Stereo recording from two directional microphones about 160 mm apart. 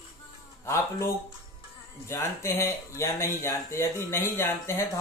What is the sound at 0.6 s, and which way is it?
Speech, 15° left (ahead or behind).